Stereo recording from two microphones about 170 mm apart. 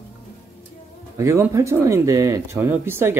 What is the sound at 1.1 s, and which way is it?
Speech, 15° right (ahead or behind).